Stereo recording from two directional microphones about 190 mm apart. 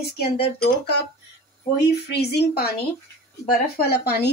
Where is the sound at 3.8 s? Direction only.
55° left (ahead or behind).